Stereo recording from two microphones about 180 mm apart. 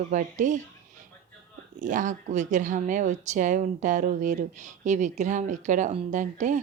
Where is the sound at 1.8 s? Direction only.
45° right (ahead or behind).